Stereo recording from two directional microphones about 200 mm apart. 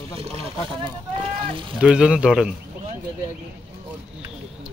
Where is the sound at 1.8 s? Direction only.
5° right (ahead or behind).